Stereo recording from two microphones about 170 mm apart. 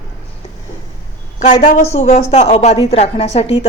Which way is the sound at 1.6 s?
45° left (ahead or behind).